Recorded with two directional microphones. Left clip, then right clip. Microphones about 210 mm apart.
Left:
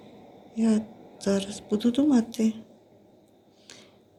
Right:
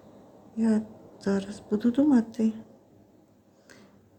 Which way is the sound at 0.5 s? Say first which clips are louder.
Left 1 dB; 15° right (ahead or behind).